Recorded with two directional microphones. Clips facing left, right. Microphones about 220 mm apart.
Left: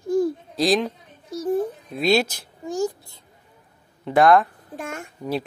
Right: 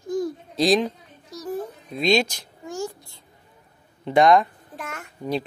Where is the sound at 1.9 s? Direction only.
5° left (ahead or behind).